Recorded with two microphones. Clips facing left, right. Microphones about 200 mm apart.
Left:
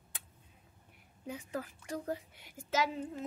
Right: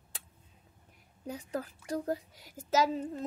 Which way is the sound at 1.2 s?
35° right (ahead or behind).